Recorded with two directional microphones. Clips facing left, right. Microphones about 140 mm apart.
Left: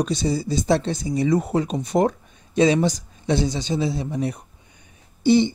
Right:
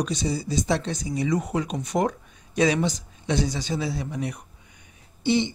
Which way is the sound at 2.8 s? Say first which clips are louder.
Left 4 dB; 35° left (ahead or behind).